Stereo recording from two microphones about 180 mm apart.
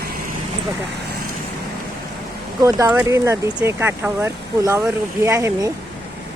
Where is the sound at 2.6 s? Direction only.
15° right (ahead or behind).